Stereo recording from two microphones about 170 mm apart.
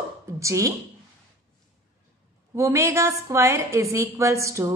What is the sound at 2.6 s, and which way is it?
A woman's voice, 15° right (ahead or behind).